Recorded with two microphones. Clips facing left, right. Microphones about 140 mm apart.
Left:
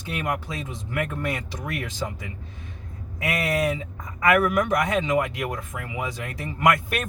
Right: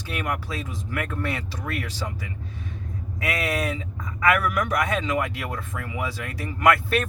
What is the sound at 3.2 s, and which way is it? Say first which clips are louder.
Speech: left 2 dB; 20° left (ahead or behind).